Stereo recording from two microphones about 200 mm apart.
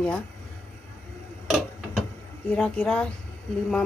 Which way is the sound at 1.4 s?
5° right (ahead or behind).